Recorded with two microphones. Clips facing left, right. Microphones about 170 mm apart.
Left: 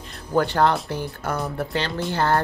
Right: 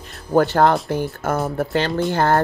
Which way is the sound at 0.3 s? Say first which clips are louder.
Right 4 dB; 45° right (ahead or behind).